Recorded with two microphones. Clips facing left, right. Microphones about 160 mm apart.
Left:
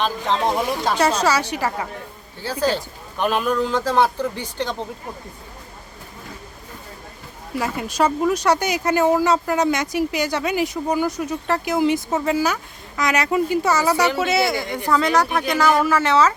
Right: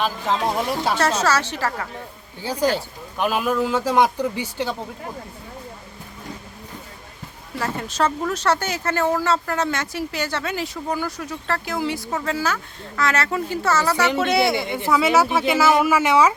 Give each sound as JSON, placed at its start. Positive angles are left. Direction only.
{"t": 0.0, "sound": "speech", "side_deg": -5}
{"t": 0.9, "sound": "speech", "side_deg": 15}
{"t": 2.4, "sound": "a man's voice", "side_deg": -15}
{"t": 7.6, "sound": "speech", "side_deg": 10}
{"t": 14.2, "sound": "a man's voice", "side_deg": 0}